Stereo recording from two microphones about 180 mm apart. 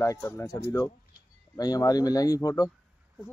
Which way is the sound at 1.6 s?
20° left (ahead or behind).